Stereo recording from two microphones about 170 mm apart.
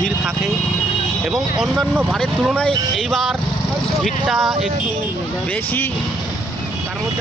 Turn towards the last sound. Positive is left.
turn(degrees=10)  # may be behind; listen again after turning